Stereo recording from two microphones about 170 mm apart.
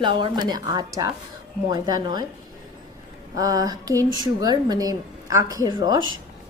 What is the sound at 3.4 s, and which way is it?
A woman's voice, 20° right (ahead or behind).